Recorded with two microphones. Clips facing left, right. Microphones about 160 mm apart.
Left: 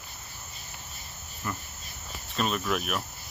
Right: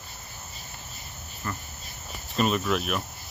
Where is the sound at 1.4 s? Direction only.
10° left (ahead or behind).